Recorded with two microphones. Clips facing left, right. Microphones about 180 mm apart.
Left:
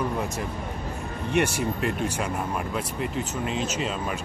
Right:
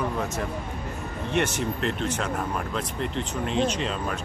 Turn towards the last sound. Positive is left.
turn(degrees=5)  # may be behind; listen again after turning